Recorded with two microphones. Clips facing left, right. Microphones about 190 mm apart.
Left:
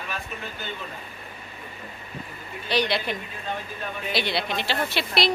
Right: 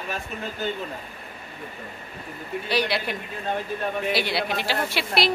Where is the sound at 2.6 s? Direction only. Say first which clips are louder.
Left 1 dB; 10° right (ahead or behind).